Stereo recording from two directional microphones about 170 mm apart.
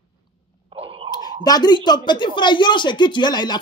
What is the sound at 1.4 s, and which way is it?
Speech, 25° left (ahead or behind).